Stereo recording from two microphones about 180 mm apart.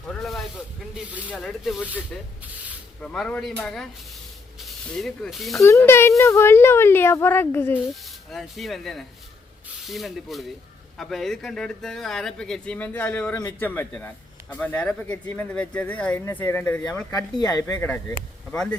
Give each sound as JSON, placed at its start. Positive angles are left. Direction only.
{"t": 0.1, "sound": "speech", "side_deg": 0}
{"t": 3.0, "sound": "speech", "side_deg": 5}
{"t": 5.5, "sound": "speech", "side_deg": 15}
{"t": 8.3, "sound": "speech", "side_deg": 0}